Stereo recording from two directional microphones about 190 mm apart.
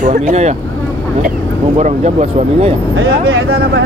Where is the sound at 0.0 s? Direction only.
40° right (ahead or behind).